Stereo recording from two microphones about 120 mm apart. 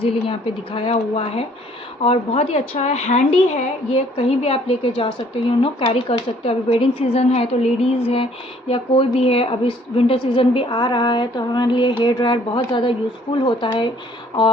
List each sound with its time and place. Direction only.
0.0 s a woman's voice: 50° left (ahead or behind)